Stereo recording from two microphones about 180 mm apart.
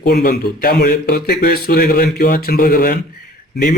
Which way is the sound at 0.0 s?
65° left (ahead or behind).